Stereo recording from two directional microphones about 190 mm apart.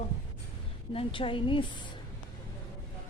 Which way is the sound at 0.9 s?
30° left (ahead or behind).